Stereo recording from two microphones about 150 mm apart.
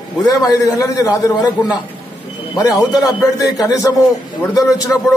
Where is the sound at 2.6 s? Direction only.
20° left (ahead or behind).